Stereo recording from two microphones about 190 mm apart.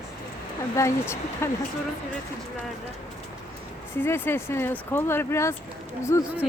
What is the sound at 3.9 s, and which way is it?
Speech, 10° left (ahead or behind).